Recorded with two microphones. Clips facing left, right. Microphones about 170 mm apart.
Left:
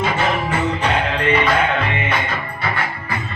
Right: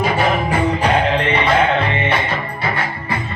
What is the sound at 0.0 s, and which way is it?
Music, 35° right (ahead or behind).